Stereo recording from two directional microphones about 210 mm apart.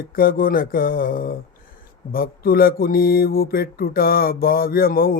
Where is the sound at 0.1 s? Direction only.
45° left (ahead or behind).